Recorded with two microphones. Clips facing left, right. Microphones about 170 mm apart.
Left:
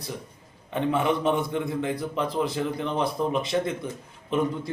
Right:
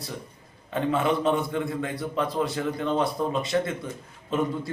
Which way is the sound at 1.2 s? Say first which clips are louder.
Even; 20° left (ahead or behind).